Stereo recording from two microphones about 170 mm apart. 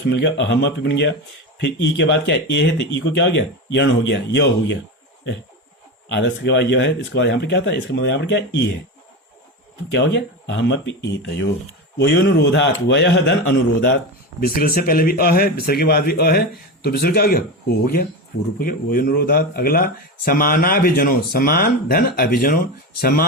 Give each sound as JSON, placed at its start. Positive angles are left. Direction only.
{"t": 0.1, "sound": "speech", "side_deg": 90}
{"t": 6.1, "sound": "speech", "side_deg": 90}
{"t": 9.9, "sound": "speech", "side_deg": 90}
{"t": 14.4, "sound": "speech", "side_deg": 60}
{"t": 18.6, "sound": "speech", "side_deg": 55}